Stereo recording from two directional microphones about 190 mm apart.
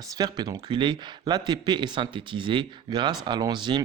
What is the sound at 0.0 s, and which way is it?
Speech, 20° right (ahead or behind).